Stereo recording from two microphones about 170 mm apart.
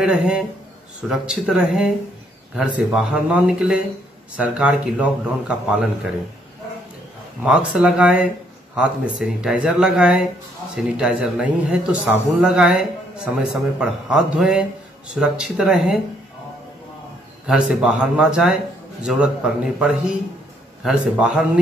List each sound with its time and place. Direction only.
0.0 s a man's voice: 5° right (ahead or behind)
2.9 s a man's voice: 5° right (ahead or behind)
7.4 s a man's voice: 5° right (ahead or behind)
17.5 s a man's voice: 5° right (ahead or behind)